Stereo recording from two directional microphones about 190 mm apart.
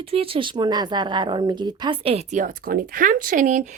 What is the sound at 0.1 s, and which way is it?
A woman's voice, 30° right (ahead or behind).